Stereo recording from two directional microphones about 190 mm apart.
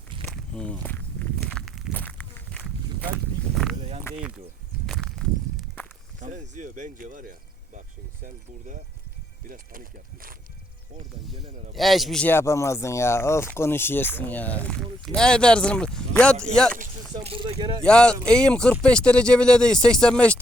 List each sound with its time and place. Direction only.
0.3 s walk: 5° left (ahead or behind)
3.5 s a sound: centre (ahead or behind)
4.1 s a sound: 15° left (ahead or behind)
4.9 s walk: centre (ahead or behind)
6.1 s speech: 40° right (ahead or behind)
11.7 s speech: centre (ahead or behind)
17.2 s speech: 30° right (ahead or behind)
17.8 s speech: 5° left (ahead or behind)